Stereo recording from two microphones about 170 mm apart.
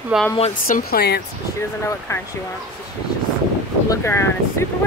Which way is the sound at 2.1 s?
15° left (ahead or behind).